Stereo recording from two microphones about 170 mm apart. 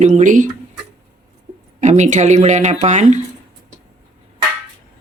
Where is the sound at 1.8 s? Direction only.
45° right (ahead or behind).